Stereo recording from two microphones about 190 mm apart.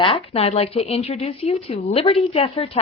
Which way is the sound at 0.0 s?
30° left (ahead or behind).